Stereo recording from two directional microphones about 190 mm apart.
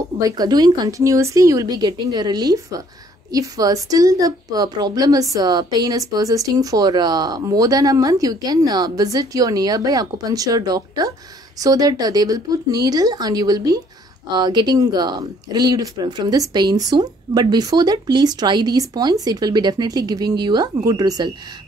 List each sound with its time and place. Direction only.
0.2 s a woman's voice: 20° right (ahead or behind)